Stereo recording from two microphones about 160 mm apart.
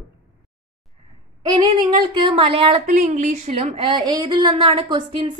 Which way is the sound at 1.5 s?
30° right (ahead or behind).